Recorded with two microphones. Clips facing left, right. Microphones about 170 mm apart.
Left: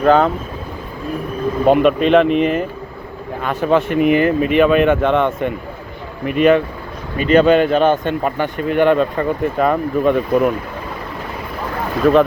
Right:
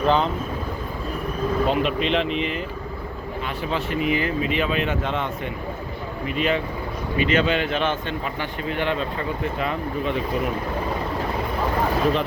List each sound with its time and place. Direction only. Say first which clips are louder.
0.0 s speech: left 8 dB; 50° left (ahead or behind)
1.6 s speech: left 12 dB; 55° left (ahead or behind)
7.2 s speech: left 10 dB; 45° left (ahead or behind)